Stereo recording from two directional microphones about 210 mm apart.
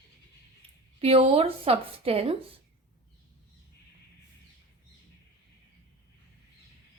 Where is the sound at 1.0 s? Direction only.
30° right (ahead or behind).